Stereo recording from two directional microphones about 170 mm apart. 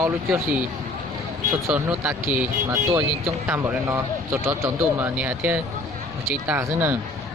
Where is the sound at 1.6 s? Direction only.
10° right (ahead or behind).